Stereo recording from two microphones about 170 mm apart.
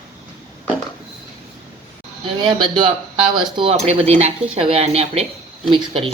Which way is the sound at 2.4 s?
30° right (ahead or behind).